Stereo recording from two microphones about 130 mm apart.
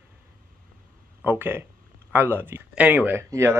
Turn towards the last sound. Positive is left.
turn(degrees=-20)  # may be behind; listen again after turning